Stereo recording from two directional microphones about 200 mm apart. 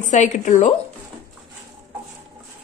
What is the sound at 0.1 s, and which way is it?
Speech, 40° left (ahead or behind).